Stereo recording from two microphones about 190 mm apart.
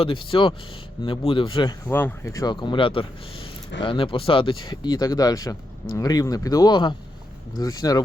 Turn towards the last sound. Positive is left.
turn(degrees=20)  # may be behind; listen again after turning